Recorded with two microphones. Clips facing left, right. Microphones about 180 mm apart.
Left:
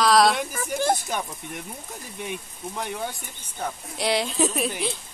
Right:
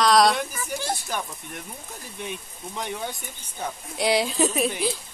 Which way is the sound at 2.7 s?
5° left (ahead or behind).